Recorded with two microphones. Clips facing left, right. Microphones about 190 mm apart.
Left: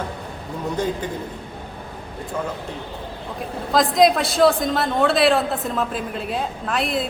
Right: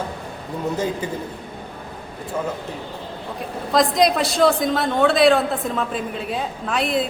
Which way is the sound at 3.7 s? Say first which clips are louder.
Left 1 dB; centre (ahead or behind).